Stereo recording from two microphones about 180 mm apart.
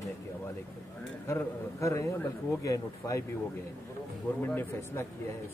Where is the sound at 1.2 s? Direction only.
15° left (ahead or behind).